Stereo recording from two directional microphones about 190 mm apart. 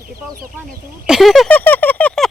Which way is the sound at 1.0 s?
Centre (ahead or behind).